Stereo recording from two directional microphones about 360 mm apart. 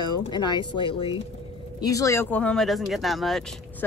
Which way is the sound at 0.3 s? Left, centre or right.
Centre.